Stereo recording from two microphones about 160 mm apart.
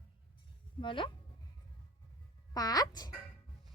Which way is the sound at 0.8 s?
30° left (ahead or behind).